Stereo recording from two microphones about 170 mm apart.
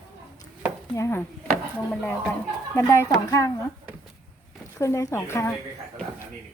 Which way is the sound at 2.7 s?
15° left (ahead or behind).